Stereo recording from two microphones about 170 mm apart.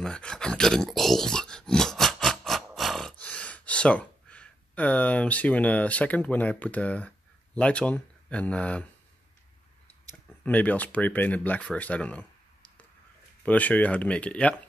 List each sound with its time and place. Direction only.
0.0 s a sound: 5° left (ahead or behind)
10.4 s speech: 10° left (ahead or behind)
13.4 s speech: 10° left (ahead or behind)